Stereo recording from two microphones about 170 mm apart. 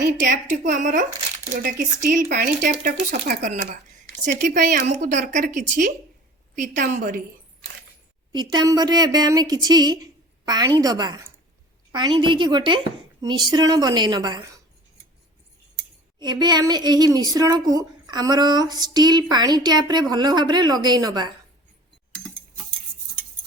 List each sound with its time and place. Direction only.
0.2 s a woman's voice: 50° right (ahead or behind)
2.0 s a woman's voice: 50° right (ahead or behind)
8.3 s speech: 25° right (ahead or behind)
16.1 s speech: 25° right (ahead or behind)